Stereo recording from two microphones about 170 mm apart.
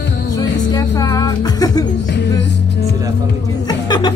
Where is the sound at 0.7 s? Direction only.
20° left (ahead or behind).